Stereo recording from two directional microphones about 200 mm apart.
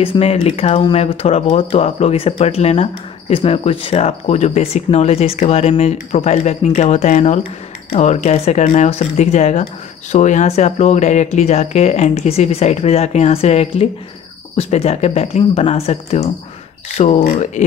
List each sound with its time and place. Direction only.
0.0 s speech: 30° left (ahead or behind)